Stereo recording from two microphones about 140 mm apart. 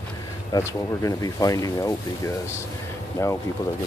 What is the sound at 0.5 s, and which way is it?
Speech, 25° left (ahead or behind).